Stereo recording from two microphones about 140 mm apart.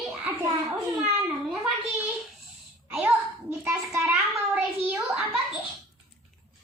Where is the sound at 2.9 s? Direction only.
10° right (ahead or behind).